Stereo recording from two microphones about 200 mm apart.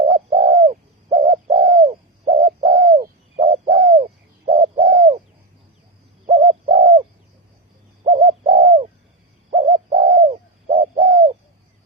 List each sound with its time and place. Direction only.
0.0 s bird: 25° right (ahead or behind)
6.2 s bird: 30° right (ahead or behind)
8.0 s bird: 30° right (ahead or behind)